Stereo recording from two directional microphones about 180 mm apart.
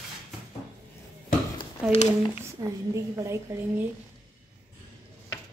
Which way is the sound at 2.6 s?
20° right (ahead or behind).